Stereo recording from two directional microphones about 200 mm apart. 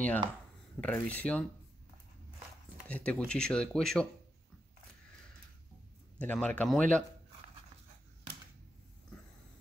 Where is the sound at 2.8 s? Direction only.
5° left (ahead or behind).